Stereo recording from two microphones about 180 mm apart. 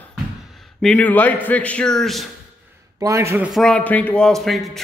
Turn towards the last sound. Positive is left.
turn(degrees=0)  # may be behind; listen again after turning